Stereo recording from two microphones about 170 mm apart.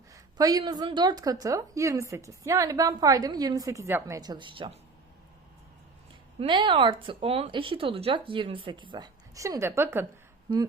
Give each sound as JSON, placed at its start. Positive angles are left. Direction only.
{"t": 0.1, "sound": "a woman's voice", "side_deg": -20}
{"t": 6.4, "sound": "a woman's voice", "side_deg": -30}